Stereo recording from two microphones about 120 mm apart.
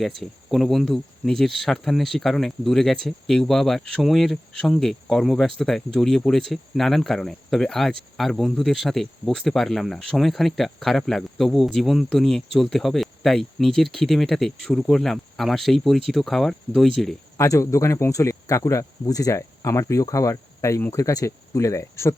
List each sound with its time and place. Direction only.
0.5 s speech: centre (ahead or behind)
17.3 s speech: 25° left (ahead or behind)